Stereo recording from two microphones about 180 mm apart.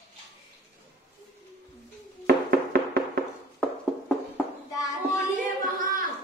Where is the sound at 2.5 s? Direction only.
60° right (ahead or behind).